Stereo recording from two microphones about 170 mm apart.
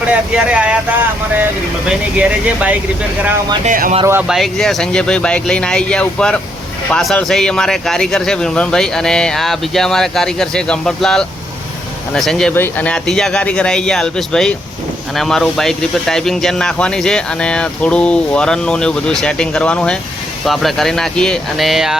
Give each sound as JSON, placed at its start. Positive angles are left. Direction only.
{"t": 0.1, "sound": "speech", "side_deg": -5}
{"t": 1.9, "sound": "speech", "side_deg": -5}
{"t": 3.6, "sound": "speech", "side_deg": -50}
{"t": 4.0, "sound": "speech", "side_deg": -15}
{"t": 4.3, "sound": "speech", "side_deg": 0}